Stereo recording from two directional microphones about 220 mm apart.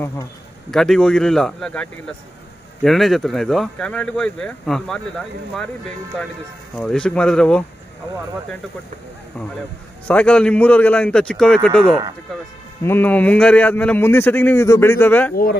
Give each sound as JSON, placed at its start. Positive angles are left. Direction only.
{"t": 0.7, "sound": "speech", "side_deg": 0}
{"t": 10.0, "sound": "speech", "side_deg": 5}
{"t": 11.8, "sound": "speech", "side_deg": -20}
{"t": 12.8, "sound": "a man's voice", "side_deg": 10}